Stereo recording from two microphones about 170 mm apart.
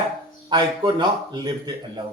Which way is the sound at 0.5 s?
25° right (ahead or behind).